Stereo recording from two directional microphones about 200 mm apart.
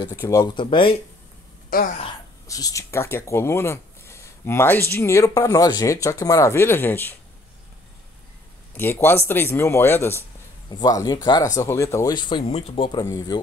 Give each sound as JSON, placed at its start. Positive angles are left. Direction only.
{"t": 0.0, "sound": "speech", "side_deg": 20}
{"t": 1.7, "sound": "speech", "side_deg": 45}
{"t": 2.4, "sound": "speech", "side_deg": 15}
{"t": 8.7, "sound": "speech", "side_deg": 10}